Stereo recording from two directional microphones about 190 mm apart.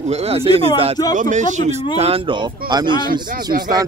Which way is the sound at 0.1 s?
35° right (ahead or behind).